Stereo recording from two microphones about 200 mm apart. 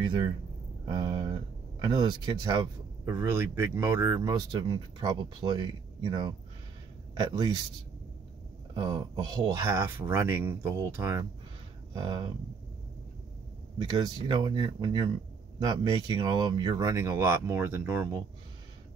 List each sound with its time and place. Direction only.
0.8 s speech: 20° right (ahead or behind)
8.7 s speech: 20° right (ahead or behind)
13.9 s speech: 20° right (ahead or behind)